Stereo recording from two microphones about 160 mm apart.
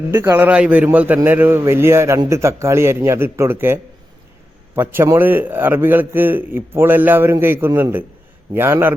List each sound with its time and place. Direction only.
0.1 s a man's voice: 10° right (ahead or behind)